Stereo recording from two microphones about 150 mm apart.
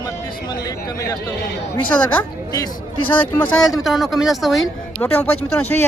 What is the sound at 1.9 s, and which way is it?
Speech, 10° left (ahead or behind).